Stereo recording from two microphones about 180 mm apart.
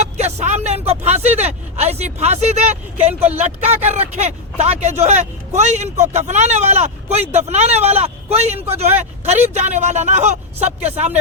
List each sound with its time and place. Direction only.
0.0 s vehicle: 40° right (ahead or behind)
0.9 s speech: 40° right (ahead or behind)